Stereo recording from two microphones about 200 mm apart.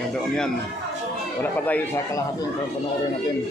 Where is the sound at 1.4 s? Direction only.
10° left (ahead or behind).